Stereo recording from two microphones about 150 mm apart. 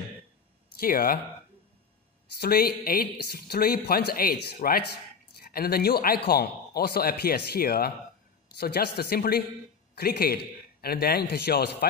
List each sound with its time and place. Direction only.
0.7 s speech: 75° left (ahead or behind)
2.3 s a man's voice: 90° left